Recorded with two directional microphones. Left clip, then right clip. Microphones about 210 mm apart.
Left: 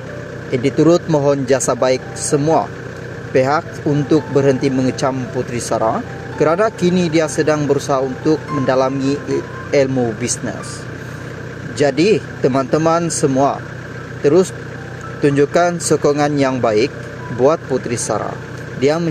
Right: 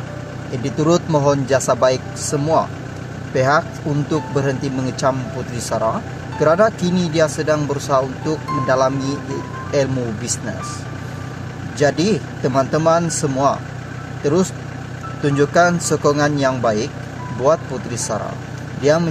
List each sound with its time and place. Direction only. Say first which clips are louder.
0.5 s speech: left 5 dB; 20° left (ahead or behind)
11.8 s speech: left 3 dB; 20° left (ahead or behind)